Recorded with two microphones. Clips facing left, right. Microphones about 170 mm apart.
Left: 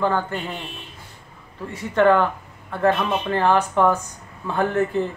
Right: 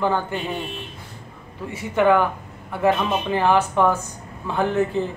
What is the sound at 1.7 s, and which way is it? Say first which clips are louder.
Speech: left 1 dB; 10° right (ahead or behind).